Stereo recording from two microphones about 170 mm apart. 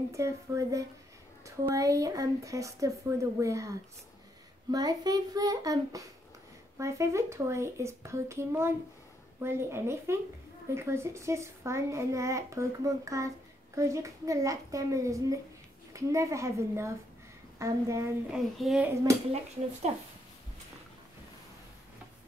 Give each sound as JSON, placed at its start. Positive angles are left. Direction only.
{"t": 0.1, "sound": "a child's voice", "side_deg": -15}
{"t": 18.3, "sound": "a child's voice", "side_deg": -5}